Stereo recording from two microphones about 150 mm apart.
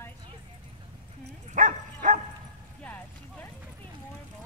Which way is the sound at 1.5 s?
55° right (ahead or behind).